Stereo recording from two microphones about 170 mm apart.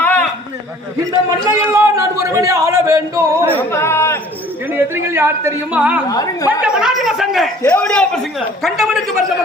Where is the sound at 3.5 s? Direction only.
15° left (ahead or behind).